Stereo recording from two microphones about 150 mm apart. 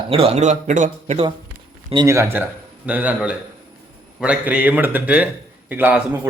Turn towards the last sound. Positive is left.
turn(degrees=-15)  # may be behind; listen again after turning